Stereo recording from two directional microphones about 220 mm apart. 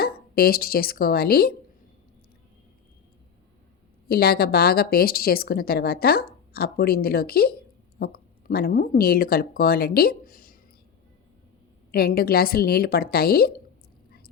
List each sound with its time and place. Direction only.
0.0 s speech: 45° left (ahead or behind)
4.1 s a woman's voice: 45° left (ahead or behind)
11.9 s a woman's voice: 45° left (ahead or behind)